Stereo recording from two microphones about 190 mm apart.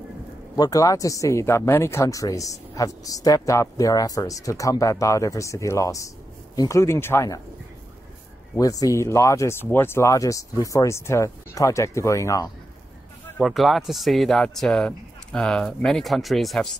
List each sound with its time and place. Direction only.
0.6 s speech: 20° left (ahead or behind)
8.5 s speech: 20° left (ahead or behind)
13.4 s speech: centre (ahead or behind)